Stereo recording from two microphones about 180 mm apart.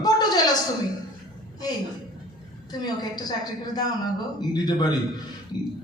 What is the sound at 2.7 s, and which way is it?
A woman's voice, 20° left (ahead or behind).